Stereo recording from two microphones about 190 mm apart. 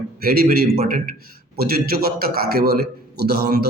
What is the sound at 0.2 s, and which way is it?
A man's voice, 50° right (ahead or behind).